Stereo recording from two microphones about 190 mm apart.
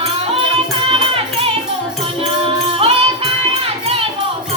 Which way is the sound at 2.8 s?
30° right (ahead or behind).